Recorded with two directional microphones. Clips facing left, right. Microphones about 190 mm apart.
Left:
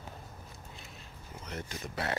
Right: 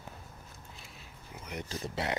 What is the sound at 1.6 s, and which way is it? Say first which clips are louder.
Speech: right 2 dB; 30° right (ahead or behind).